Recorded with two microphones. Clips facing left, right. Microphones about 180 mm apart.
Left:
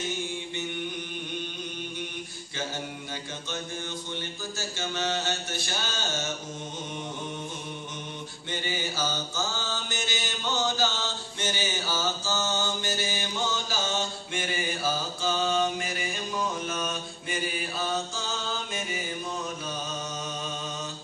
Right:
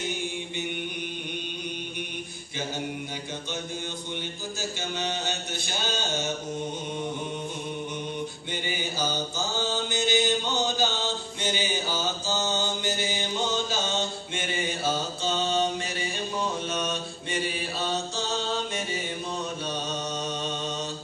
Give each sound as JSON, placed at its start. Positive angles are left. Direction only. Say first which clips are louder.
{"t": 4.6, "sound": "mantra", "louder": "even", "side_deg": -15}
{"t": 8.6, "sound": "mantra", "louder": "right 1 dB", "side_deg": -15}